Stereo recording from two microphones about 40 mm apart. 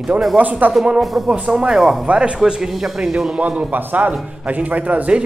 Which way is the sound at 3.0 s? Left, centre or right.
Centre.